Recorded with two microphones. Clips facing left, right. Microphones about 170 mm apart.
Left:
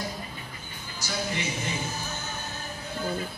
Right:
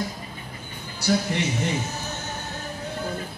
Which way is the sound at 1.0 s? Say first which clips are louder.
Right 14 dB; 65° right (ahead or behind).